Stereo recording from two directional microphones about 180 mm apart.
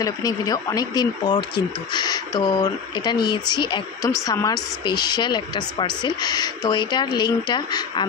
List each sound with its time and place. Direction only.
0.0 s speech: 20° left (ahead or behind)